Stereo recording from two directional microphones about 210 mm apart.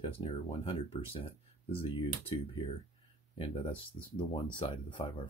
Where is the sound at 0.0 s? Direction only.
25° left (ahead or behind).